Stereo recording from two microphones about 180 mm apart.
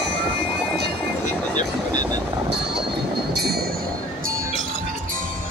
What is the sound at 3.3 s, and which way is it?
Train, 60° right (ahead or behind).